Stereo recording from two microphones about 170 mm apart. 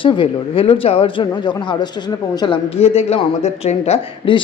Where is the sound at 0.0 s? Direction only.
30° left (ahead or behind).